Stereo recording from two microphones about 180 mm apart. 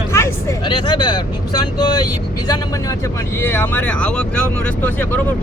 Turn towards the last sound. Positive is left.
turn(degrees=10)  # may be behind; listen again after turning